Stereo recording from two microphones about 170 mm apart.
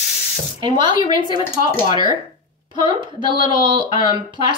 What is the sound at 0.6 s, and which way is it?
A woman's voice, 25° right (ahead or behind).